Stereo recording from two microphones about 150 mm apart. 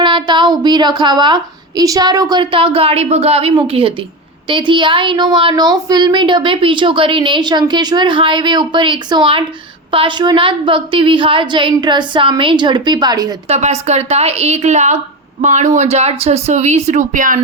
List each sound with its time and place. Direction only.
0.0 s a woman's voice: 30° right (ahead or behind)
13.5 s speech: 50° right (ahead or behind)